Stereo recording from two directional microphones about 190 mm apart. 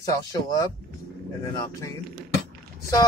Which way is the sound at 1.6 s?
15° left (ahead or behind).